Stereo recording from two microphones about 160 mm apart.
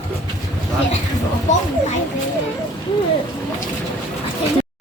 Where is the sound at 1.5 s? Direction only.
50° left (ahead or behind).